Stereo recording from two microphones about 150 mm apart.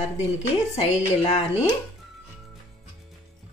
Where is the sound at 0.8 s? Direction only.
45° left (ahead or behind).